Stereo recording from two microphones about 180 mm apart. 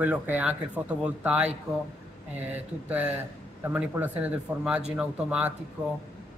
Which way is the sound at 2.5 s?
10° right (ahead or behind).